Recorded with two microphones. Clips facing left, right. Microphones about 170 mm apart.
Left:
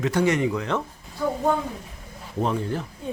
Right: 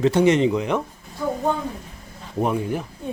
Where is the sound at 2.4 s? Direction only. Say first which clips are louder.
Right 3 dB; 15° right (ahead or behind).